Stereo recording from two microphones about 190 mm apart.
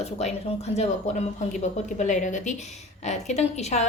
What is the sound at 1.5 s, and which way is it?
A woman's voice, 40° left (ahead or behind).